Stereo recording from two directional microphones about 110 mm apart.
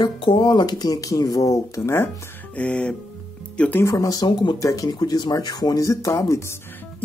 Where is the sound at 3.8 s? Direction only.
30° left (ahead or behind).